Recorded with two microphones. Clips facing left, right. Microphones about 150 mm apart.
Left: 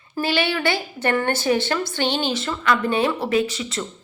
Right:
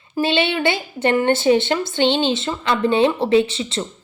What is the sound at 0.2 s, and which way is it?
A woman's voice, 25° right (ahead or behind).